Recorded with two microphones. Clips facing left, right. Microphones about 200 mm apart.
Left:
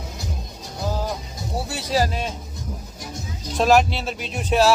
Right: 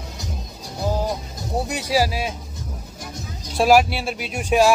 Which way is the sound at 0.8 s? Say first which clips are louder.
Right 3 dB; 15° right (ahead or behind).